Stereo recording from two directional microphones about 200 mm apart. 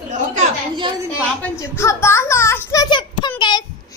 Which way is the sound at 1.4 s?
15° left (ahead or behind).